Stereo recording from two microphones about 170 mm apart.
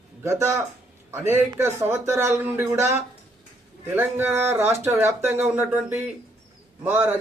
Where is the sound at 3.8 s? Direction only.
10° right (ahead or behind).